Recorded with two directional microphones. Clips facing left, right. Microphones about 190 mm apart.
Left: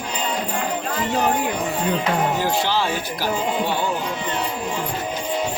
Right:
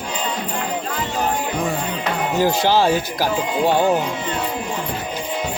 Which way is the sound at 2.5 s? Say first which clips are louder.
Right 5 dB; 45° right (ahead or behind).